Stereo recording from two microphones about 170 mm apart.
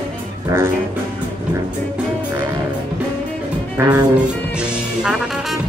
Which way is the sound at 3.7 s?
20° right (ahead or behind).